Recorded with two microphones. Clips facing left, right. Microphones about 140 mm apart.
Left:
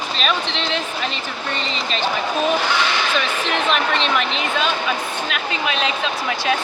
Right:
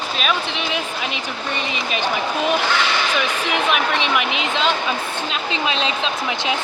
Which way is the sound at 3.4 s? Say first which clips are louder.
Even; 15° right (ahead or behind).